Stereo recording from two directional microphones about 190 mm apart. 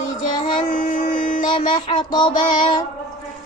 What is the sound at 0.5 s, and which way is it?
Child singing, 45° left (ahead or behind).